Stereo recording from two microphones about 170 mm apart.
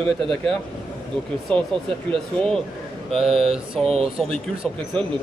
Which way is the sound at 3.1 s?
Centre (ahead or behind).